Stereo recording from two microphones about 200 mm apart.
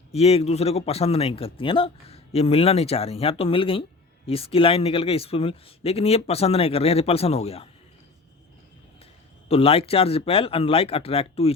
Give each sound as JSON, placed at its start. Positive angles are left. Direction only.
{"t": 0.1, "sound": "speech", "side_deg": 30}
{"t": 9.5, "sound": "speech", "side_deg": 30}